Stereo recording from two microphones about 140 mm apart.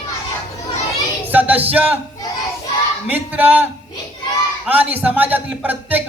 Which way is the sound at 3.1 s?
10° right (ahead or behind).